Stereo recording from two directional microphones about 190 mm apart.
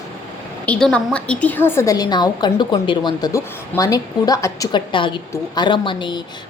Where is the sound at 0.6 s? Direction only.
5° left (ahead or behind).